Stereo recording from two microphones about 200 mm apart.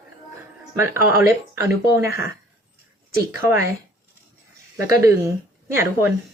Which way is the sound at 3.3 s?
10° right (ahead or behind).